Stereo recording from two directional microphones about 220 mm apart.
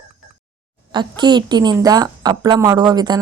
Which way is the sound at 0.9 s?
20° right (ahead or behind).